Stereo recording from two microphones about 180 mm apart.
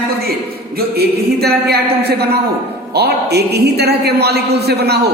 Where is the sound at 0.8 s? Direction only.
60° right (ahead or behind).